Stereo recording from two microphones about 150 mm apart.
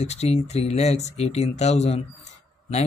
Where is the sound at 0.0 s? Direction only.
45° left (ahead or behind).